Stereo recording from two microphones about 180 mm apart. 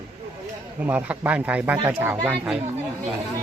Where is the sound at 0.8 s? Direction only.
10° right (ahead or behind).